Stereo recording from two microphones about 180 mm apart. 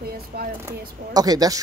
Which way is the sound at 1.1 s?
20° right (ahead or behind).